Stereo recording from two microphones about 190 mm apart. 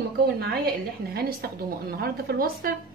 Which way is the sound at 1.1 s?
55° right (ahead or behind).